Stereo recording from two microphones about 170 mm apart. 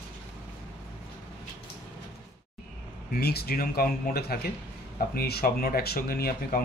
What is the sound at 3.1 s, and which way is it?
Speech, 65° left (ahead or behind).